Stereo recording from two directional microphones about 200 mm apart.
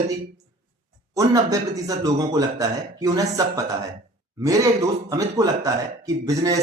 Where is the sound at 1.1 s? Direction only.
15° right (ahead or behind).